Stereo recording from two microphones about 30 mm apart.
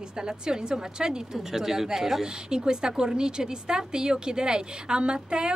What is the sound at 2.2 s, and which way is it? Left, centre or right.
A woman's voice, right.